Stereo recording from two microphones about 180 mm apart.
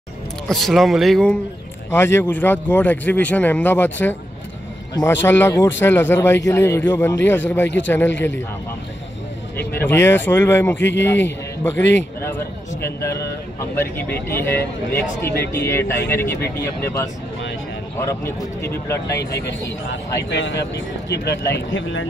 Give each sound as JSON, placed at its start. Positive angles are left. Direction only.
{"t": 0.5, "sound": "a man's voice", "side_deg": 0}
{"t": 1.9, "sound": "speech", "side_deg": 15}
{"t": 9.8, "sound": "speech", "side_deg": 10}
{"t": 11.7, "sound": "speech", "side_deg": 85}
{"t": 12.2, "sound": "speech", "side_deg": 15}
{"t": 19.1, "sound": "speech", "side_deg": 65}
{"t": 21.1, "sound": "speech", "side_deg": 70}